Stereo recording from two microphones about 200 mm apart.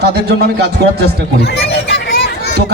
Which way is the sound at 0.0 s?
55° right (ahead or behind).